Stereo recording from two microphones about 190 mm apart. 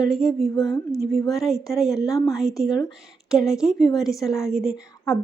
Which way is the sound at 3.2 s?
5° right (ahead or behind).